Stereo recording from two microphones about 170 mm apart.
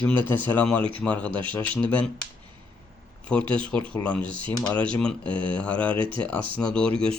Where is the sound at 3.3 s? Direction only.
5° left (ahead or behind).